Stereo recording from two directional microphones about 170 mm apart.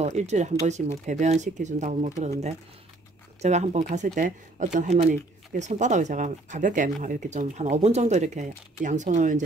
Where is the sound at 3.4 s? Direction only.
40° right (ahead or behind).